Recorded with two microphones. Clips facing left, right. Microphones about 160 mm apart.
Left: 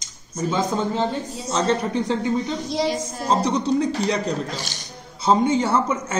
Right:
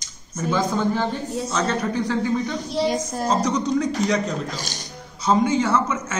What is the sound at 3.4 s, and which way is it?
A man's voice, 30° left (ahead or behind).